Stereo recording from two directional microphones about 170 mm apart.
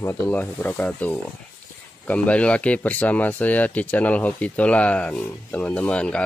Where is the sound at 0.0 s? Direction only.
10° left (ahead or behind).